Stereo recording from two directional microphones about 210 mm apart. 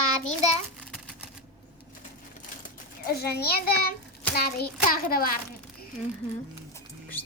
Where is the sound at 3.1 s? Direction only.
50° left (ahead or behind).